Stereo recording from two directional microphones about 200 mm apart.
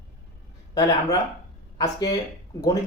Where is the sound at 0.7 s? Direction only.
20° left (ahead or behind).